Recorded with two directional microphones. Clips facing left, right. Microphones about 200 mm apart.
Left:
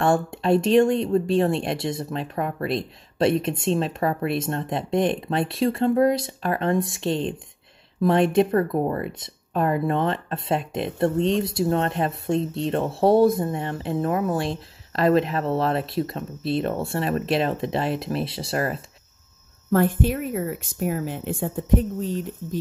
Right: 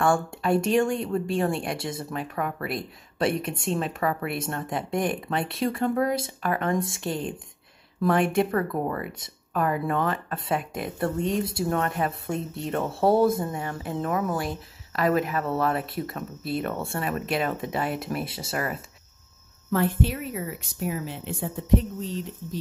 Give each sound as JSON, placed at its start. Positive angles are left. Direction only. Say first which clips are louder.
{"t": 0.0, "sound": "speech", "louder": "left 2 dB", "side_deg": 20}
{"t": 19.7, "sound": "speech", "louder": "left 4 dB", "side_deg": 50}